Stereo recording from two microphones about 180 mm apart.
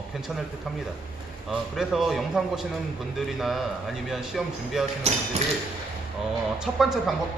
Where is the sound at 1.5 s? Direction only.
Centre (ahead or behind).